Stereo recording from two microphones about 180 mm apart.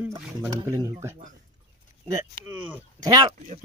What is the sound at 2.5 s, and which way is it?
Speech, 10° right (ahead or behind).